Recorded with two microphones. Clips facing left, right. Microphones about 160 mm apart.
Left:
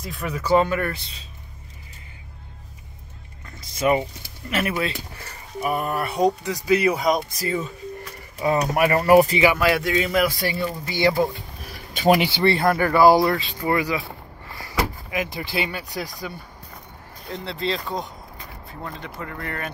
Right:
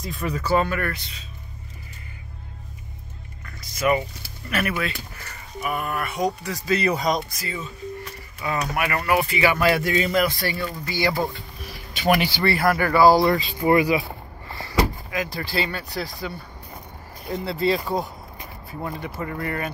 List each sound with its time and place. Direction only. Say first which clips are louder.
0.0 s speech: right 2 dB; centre (ahead or behind)
0.4 s speech: left 4 dB; 15° left (ahead or behind)
3.4 s music: left 1 dB; 25° left (ahead or behind)
4.5 s speech: left 1 dB; 25° left (ahead or behind)
6.4 s speech: left 3 dB; 15° left (ahead or behind)
7.3 s speech: left 6 dB; 40° left (ahead or behind)
9.6 s speech: even; centre (ahead or behind)
10.5 s speech: left 2 dB; 20° left (ahead or behind)
13.2 s speech: right 1 dB; centre (ahead or behind)
13.6 s speech: right 4 dB; 15° right (ahead or behind)
15.0 s speech: left 1 dB; 20° left (ahead or behind)
17.3 s speech: right 4 dB; 5° right (ahead or behind)